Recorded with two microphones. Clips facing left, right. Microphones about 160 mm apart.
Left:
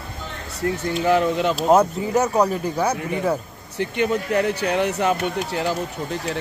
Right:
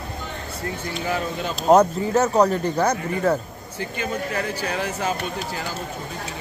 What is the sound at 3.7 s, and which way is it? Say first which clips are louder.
Speech: left 6 dB; 70° left (ahead or behind).